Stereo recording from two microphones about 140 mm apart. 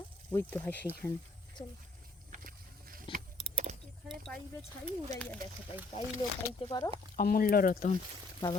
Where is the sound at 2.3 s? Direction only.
80° right.